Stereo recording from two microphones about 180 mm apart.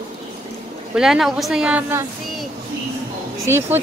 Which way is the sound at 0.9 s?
5° right (ahead or behind).